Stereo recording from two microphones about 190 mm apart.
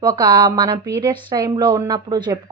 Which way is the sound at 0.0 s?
20° right (ahead or behind).